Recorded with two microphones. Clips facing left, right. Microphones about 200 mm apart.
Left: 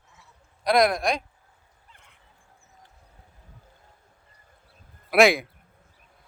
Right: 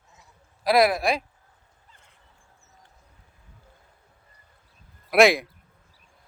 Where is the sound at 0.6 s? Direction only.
5° right (ahead or behind).